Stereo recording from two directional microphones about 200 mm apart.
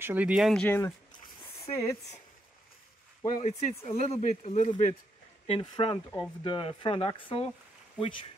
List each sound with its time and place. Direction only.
0.0 s speech: 10° right (ahead or behind); by 2.0 s 15° left (ahead or behind)
3.3 s speech: 35° left (ahead or behind)
5.5 s speech: 25° left (ahead or behind)